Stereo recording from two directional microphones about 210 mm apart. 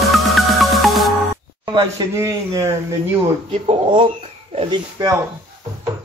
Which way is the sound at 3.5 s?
25° right (ahead or behind).